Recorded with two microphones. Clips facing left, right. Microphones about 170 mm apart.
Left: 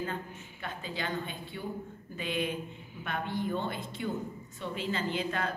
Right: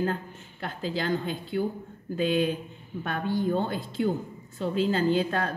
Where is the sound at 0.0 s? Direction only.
85° right.